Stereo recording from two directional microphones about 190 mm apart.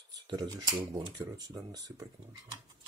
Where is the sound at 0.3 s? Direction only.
20° right (ahead or behind).